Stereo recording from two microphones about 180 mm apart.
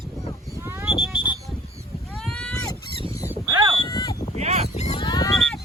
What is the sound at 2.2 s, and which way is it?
Boat, 5° left (ahead or behind).